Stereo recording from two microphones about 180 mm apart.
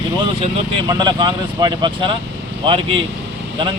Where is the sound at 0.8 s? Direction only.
25° right (ahead or behind).